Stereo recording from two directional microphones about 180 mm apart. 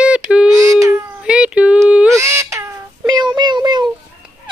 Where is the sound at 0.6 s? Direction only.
20° right (ahead or behind).